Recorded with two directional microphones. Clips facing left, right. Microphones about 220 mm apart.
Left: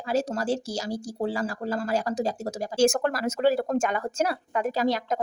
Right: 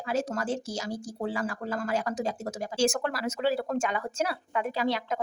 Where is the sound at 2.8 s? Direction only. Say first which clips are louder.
Left 5 dB; 45° left (ahead or behind).